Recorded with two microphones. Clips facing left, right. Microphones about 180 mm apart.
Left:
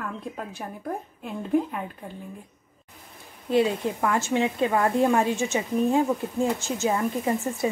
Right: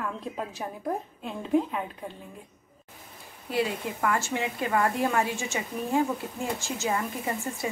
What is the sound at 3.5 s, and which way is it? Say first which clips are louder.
A woman's voice: left 6 dB; 20° left (ahead or behind).